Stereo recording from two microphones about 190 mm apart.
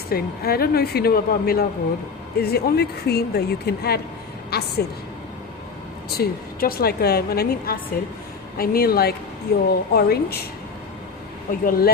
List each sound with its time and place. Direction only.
0.1 s a woman's voice: 55° left (ahead or behind)
4.5 s a sound: 55° left (ahead or behind)
6.1 s a woman's voice: 50° left (ahead or behind)
11.6 s a woman's voice: 50° left (ahead or behind)